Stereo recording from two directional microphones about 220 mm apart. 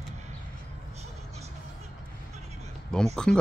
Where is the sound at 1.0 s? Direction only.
30° right (ahead or behind).